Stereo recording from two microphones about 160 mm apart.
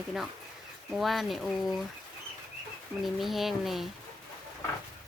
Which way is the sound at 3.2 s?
Centre (ahead or behind).